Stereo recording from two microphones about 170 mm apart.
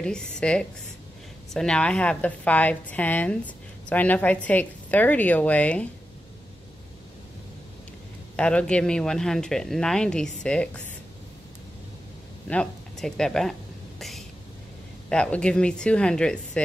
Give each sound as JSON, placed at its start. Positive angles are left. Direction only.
{"t": 0.0, "sound": "a woman's voice", "side_deg": 5}
{"t": 8.4, "sound": "speech", "side_deg": 5}
{"t": 12.4, "sound": "a sound", "side_deg": 5}
{"t": 15.0, "sound": "speech", "side_deg": 5}